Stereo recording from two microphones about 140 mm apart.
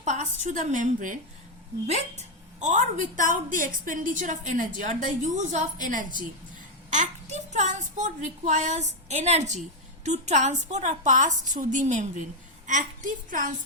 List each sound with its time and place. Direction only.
0.0 s a woman's voice: 60° right (ahead or behind)
1.9 s a woman's voice: 55° right (ahead or behind)
7.3 s a woman's voice: 60° right (ahead or behind)